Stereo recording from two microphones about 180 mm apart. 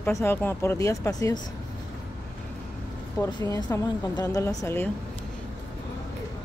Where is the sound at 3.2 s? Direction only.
20° left (ahead or behind).